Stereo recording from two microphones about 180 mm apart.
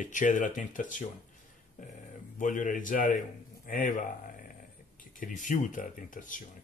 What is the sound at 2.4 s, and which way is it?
A man's voice, 45° left (ahead or behind).